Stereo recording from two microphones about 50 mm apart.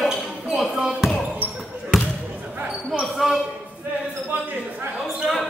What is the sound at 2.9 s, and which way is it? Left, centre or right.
Basketball bounce, centre.